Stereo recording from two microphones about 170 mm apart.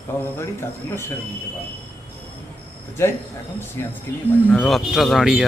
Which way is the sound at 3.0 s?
15° left (ahead or behind).